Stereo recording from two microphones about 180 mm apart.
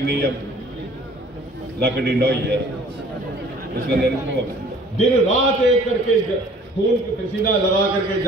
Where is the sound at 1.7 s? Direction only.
60° right (ahead or behind).